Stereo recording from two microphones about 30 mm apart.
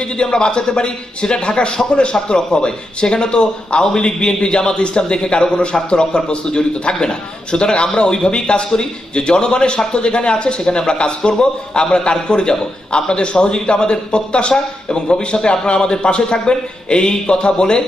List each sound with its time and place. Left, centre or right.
0.0 s a man's voice: left